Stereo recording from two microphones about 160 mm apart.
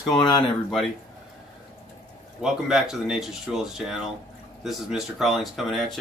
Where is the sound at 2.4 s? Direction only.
5° right (ahead or behind).